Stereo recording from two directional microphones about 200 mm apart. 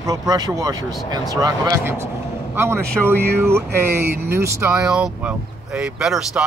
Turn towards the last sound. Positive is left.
turn(degrees=0)  # may be behind; listen again after turning